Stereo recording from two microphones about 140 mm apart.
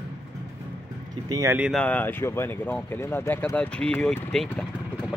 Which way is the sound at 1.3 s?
20° right (ahead or behind).